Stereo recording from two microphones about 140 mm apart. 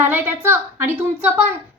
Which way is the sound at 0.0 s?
15° right (ahead or behind).